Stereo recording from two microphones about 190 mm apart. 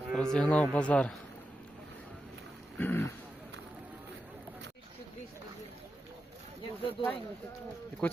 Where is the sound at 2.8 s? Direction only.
10° left (ahead or behind).